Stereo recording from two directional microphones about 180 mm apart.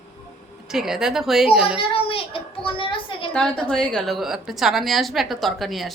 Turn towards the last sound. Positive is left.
turn(degrees=0)  # may be behind; listen again after turning